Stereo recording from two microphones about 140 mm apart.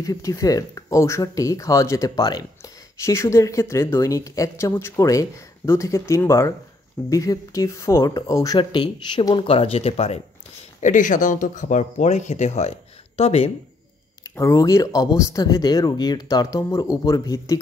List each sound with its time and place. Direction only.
0.0 s speech: 25° left (ahead or behind)
8.5 s speech: 35° left (ahead or behind)
10.8 s speech: 65° left (ahead or behind); by 13.5 s 50° left (ahead or behind)
14.3 s speech: 20° left (ahead or behind)